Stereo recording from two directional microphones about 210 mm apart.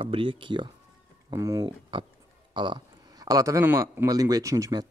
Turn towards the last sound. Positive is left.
turn(degrees=-15)  # may be behind; listen again after turning